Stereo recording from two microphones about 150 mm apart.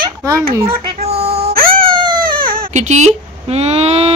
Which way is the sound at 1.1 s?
40° right (ahead or behind).